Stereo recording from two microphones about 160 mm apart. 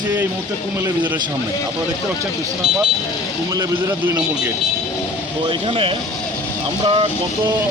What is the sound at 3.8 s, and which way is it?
Speech, 10° right (ahead or behind).